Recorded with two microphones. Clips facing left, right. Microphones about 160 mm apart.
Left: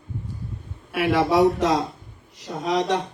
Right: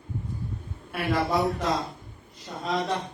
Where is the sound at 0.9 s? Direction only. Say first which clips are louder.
Left 7 dB; 90° left.